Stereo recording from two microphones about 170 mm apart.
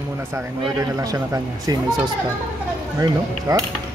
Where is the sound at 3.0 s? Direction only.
20° right (ahead or behind).